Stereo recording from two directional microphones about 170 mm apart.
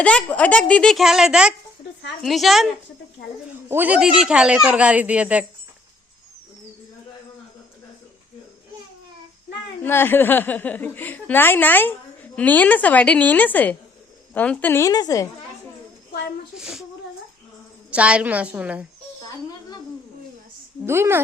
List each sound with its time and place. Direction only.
0.0 s a woman's voice: 5° left (ahead or behind)
3.5 s speech: 10° right (ahead or behind)
9.8 s a woman's voice: 10° left (ahead or behind)
16.6 s a woman's voice: 5° right (ahead or behind)
17.9 s speech: 5° right (ahead or behind)
20.8 s speech: 15° right (ahead or behind)